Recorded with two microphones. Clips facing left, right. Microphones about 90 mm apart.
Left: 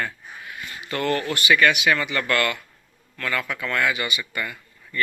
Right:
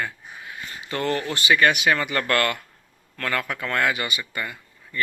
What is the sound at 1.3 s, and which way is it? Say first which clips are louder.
Speech: even; 30° right (ahead or behind).